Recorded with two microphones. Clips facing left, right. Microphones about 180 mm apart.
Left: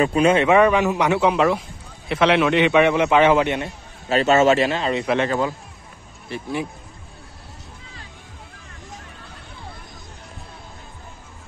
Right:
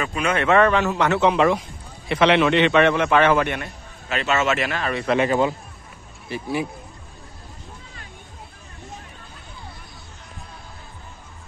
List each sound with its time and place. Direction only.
0.0 s a man's voice: 35° left (ahead or behind)
0.4 s a man's voice: 10° left (ahead or behind)
4.1 s a man's voice: 35° left (ahead or behind)
5.2 s speech: 15° right (ahead or behind)
6.2 s speech: 5° right (ahead or behind)